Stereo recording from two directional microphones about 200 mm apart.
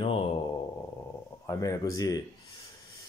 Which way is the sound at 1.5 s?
15° left (ahead or behind).